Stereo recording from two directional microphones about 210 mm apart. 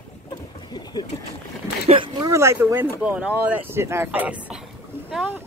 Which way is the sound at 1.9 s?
20° right (ahead or behind).